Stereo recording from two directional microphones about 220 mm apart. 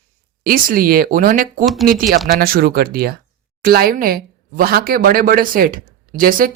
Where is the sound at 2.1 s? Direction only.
45° right (ahead or behind).